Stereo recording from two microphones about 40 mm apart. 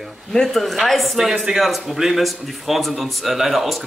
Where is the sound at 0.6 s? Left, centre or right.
Centre.